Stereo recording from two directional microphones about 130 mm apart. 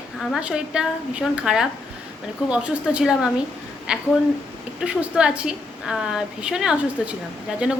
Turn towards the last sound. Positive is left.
turn(degrees=-5)  # may be behind; listen again after turning